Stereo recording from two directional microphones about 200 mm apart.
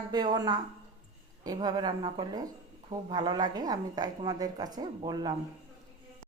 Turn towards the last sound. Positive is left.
turn(degrees=-20)  # may be behind; listen again after turning